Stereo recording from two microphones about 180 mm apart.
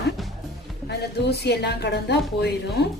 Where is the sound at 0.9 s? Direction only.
65° left (ahead or behind).